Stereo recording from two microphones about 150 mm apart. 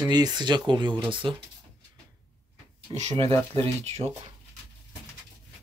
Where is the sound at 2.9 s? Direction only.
45° right (ahead or behind).